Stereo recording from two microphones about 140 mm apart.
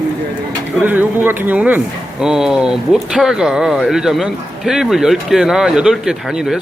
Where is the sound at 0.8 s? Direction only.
10° right (ahead or behind).